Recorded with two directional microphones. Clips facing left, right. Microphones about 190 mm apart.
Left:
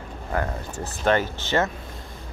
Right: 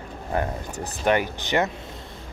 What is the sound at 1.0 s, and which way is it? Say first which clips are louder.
Speech: even; 15° right (ahead or behind).